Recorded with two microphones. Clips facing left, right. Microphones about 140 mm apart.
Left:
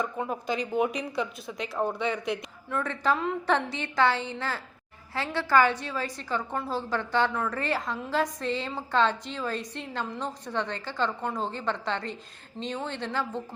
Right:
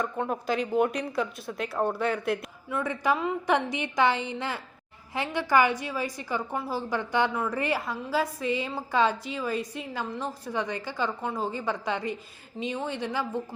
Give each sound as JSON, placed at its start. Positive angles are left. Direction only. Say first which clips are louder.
{"t": 0.0, "sound": "a woman's voice", "louder": "right 1 dB", "side_deg": 0}